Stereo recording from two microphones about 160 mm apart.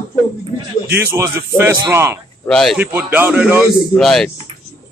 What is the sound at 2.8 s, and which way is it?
Speech, 10° right (ahead or behind).